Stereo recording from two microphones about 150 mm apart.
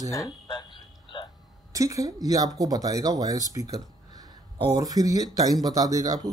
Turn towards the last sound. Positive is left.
turn(degrees=-25)  # may be behind; listen again after turning